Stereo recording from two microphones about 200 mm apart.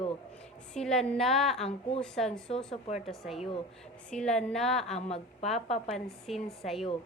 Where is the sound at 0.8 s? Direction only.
5° left (ahead or behind).